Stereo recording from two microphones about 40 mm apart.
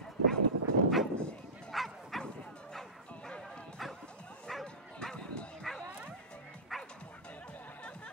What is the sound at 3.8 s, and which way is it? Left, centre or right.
Bow-wow, centre.